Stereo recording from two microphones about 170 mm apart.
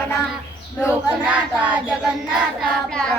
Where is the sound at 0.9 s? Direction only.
10° right (ahead or behind).